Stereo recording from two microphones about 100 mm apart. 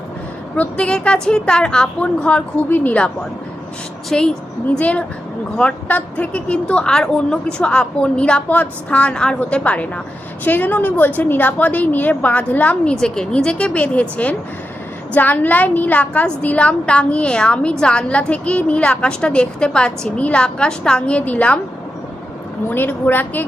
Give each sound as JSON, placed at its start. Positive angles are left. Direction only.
{"t": 0.5, "sound": "a woman's voice", "side_deg": 15}
{"t": 4.1, "sound": "a woman's voice", "side_deg": 5}
{"t": 22.7, "sound": "a woman's voice", "side_deg": 20}